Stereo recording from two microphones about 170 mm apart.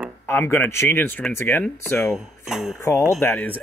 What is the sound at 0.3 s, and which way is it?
Speech, 15° left (ahead or behind).